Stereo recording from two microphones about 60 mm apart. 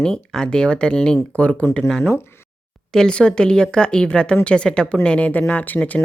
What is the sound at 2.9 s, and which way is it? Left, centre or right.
A woman's voice, centre.